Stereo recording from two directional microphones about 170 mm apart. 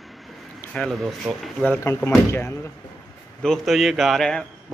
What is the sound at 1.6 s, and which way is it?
Speech, 10° left (ahead or behind).